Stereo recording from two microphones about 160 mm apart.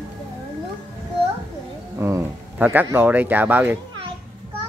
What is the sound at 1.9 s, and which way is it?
Speech, 15° right (ahead or behind).